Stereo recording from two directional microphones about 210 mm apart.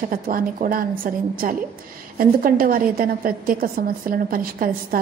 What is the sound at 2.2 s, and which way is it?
A woman's voice, 45° right (ahead or behind).